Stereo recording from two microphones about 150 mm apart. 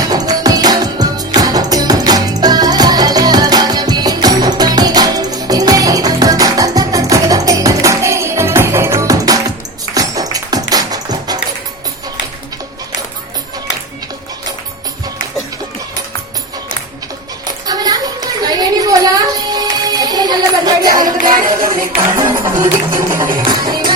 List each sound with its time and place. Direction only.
0.1 s music: 25° right (ahead or behind)
17.7 s a sound: 25° right (ahead or behind)
21.4 s music: 70° right (ahead or behind)
22.1 s music: 20° right (ahead or behind)
23.4 s music: 30° right (ahead or behind)